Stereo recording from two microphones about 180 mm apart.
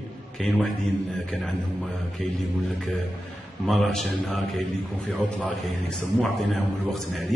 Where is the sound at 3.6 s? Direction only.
Centre (ahead or behind).